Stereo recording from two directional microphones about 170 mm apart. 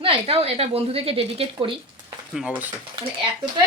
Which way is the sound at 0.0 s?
35° right (ahead or behind).